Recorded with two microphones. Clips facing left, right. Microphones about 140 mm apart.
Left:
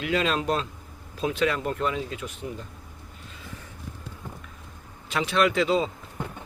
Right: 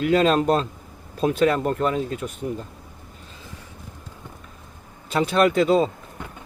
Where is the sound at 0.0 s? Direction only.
45° right (ahead or behind).